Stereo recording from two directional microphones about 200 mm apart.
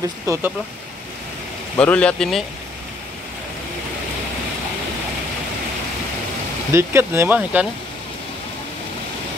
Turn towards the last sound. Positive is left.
turn(degrees=-10)  # may be behind; listen again after turning